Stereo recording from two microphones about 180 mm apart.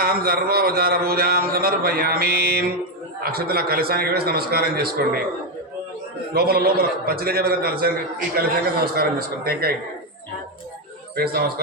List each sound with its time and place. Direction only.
0.0 s a man's voice: 55° right (ahead or behind)
6.3 s a man's voice: 60° right (ahead or behind)
11.1 s a man's voice: 60° right (ahead or behind)